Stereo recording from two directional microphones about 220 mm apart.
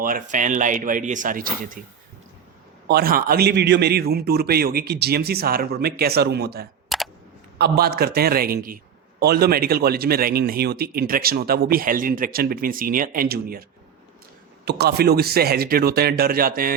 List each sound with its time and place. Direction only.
0.0 s speech: 35° right (ahead or behind)
2.8 s speech: 45° right (ahead or behind)
6.8 s camera: centre (ahead or behind)
7.6 s speech: 45° right (ahead or behind)